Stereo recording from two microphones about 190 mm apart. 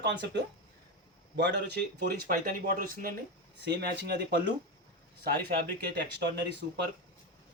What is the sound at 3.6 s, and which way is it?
Speech, 65° right (ahead or behind).